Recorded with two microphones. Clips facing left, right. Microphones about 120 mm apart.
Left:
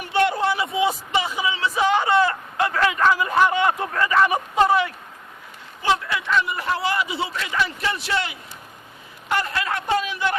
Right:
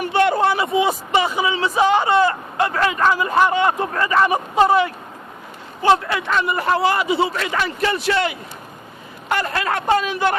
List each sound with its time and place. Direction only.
0.0 s a man's voice: 55° right (ahead or behind)